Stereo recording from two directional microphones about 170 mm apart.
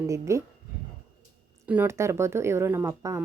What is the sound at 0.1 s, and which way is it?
Speech, 15° right (ahead or behind).